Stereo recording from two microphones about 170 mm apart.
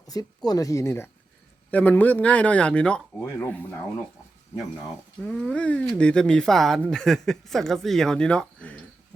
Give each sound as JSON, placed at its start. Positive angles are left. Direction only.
{"t": 0.1, "sound": "speech", "side_deg": 20}
{"t": 5.2, "sound": "speech", "side_deg": 5}